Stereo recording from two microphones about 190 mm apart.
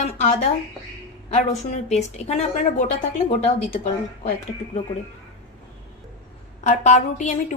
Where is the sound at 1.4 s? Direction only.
35° left (ahead or behind).